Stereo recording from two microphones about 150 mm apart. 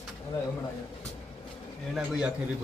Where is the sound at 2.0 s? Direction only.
5° right (ahead or behind).